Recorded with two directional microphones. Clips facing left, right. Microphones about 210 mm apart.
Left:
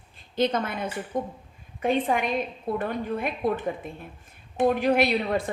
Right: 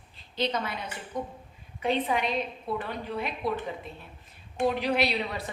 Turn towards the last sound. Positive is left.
turn(degrees=50)  # may be behind; listen again after turning